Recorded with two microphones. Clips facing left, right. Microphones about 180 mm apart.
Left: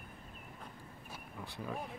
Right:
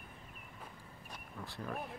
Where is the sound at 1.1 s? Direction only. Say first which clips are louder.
Even; centre (ahead or behind).